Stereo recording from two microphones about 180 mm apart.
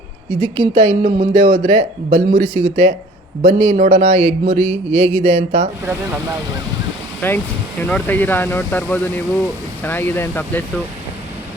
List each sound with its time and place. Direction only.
0.3 s speech: 30° right (ahead or behind)
7.2 s speech: 10° left (ahead or behind)